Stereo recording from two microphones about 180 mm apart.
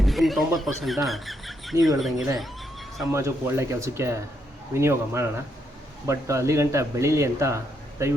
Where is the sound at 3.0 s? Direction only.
15° right (ahead or behind).